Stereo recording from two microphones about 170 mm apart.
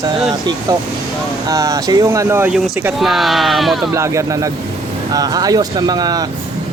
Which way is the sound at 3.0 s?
Centre (ahead or behind).